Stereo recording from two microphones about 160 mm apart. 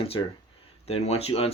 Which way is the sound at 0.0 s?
35° left (ahead or behind).